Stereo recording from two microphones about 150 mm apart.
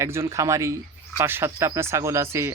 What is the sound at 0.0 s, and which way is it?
Speech, 20° right (ahead or behind).